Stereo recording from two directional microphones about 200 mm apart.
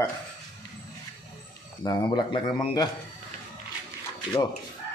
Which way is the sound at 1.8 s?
20° left (ahead or behind).